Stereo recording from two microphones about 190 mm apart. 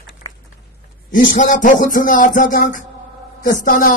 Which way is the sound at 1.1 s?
45° left (ahead or behind).